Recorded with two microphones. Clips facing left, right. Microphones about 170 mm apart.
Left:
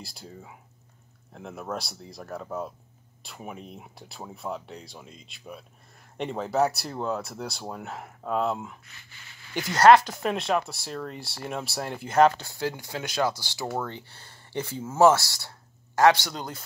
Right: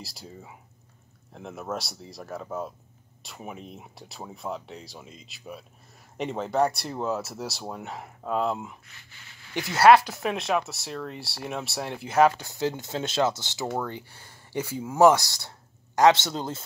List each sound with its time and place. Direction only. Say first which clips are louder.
0.0 s speech: even; centre (ahead or behind)
12.4 s speech: right 2 dB; 20° right (ahead or behind)